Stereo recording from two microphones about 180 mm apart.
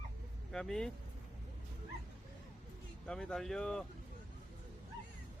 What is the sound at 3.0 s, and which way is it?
Speech, 5° left (ahead or behind).